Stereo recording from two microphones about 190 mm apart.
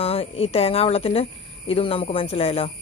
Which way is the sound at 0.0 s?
30° left (ahead or behind).